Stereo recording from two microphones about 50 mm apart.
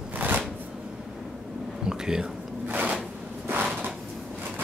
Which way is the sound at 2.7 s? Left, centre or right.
Right.